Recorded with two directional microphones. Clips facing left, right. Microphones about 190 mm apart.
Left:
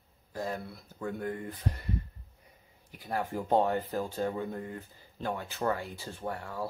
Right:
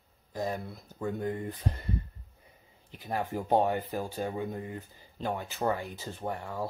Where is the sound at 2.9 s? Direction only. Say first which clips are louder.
Right 1 dB; 25° right (ahead or behind).